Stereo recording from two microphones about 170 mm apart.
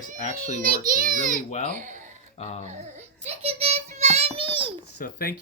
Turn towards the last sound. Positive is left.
turn(degrees=60)  # may be behind; listen again after turning